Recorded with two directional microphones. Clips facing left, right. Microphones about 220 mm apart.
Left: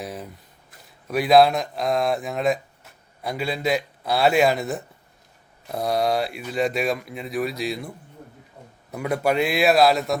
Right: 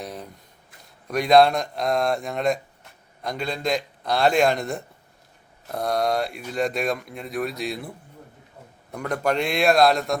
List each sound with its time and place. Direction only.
0.0 s speech: 5° left (ahead or behind)